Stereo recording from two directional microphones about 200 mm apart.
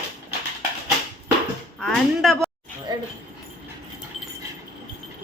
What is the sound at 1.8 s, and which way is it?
Speech, 5° left (ahead or behind).